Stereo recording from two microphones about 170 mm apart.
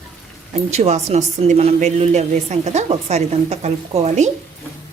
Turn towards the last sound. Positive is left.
turn(degrees=-40)  # may be behind; listen again after turning